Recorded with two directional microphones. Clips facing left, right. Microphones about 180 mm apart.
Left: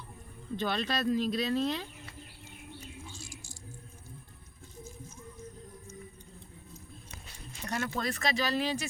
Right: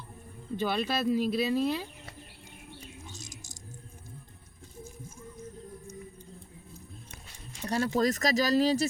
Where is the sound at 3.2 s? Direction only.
20° right (ahead or behind).